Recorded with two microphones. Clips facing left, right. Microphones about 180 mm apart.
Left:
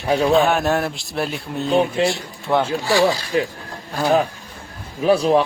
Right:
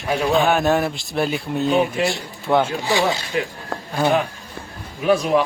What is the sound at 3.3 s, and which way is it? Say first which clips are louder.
Speech: left 3 dB; 35° left (ahead or behind).